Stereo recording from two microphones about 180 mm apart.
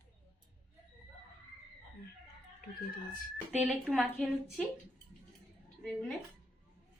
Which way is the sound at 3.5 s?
10° right (ahead or behind).